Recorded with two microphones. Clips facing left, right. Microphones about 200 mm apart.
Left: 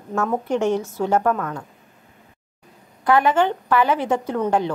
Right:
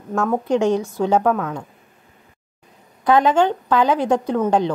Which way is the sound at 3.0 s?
15° right (ahead or behind).